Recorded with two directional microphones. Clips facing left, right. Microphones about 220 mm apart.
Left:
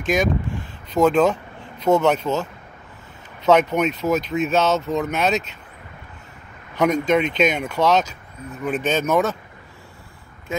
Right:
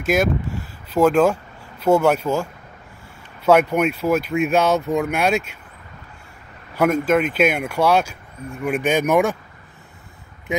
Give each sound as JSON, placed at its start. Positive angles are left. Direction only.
{"t": 0.0, "sound": "speech", "side_deg": -5}
{"t": 3.4, "sound": "speech", "side_deg": -10}
{"t": 6.7, "sound": "speech", "side_deg": -5}